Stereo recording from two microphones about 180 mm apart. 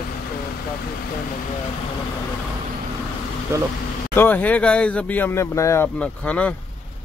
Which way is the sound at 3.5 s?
15° right (ahead or behind).